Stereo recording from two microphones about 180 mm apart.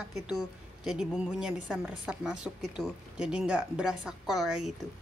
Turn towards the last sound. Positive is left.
turn(degrees=0)  # may be behind; listen again after turning